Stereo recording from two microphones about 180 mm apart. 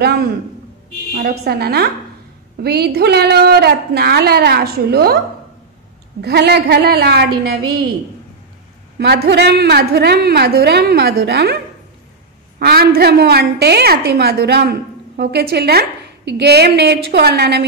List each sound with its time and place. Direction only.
1.1 s a woman's voice: 60° right (ahead or behind)
6.2 s a woman's voice: 65° right (ahead or behind)
8.9 s a woman's voice: 65° right (ahead or behind)
12.5 s a woman's voice: 60° right (ahead or behind)